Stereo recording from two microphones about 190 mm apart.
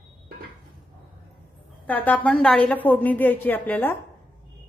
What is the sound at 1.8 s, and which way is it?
A woman's voice, 10° left (ahead or behind).